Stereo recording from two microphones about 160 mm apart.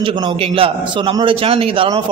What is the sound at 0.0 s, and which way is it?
A man's voice, 35° right (ahead or behind).